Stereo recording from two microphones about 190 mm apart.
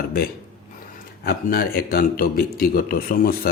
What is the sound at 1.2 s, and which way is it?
Speech, 50° left (ahead or behind).